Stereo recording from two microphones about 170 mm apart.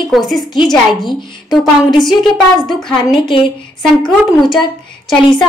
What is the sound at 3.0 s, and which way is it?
Speech, 30° left (ahead or behind).